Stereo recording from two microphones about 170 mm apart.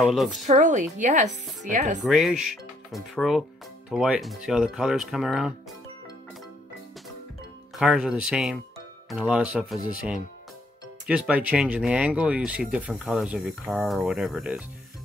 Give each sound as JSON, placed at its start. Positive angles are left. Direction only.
{"t": 0.1, "sound": "speech", "side_deg": 0}
{"t": 0.5, "sound": "speech", "side_deg": -45}
{"t": 2.0, "sound": "speech", "side_deg": 0}
{"t": 7.7, "sound": "speech", "side_deg": -5}